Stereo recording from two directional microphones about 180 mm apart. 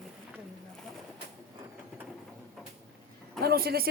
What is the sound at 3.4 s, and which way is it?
Speech, 60° right (ahead or behind).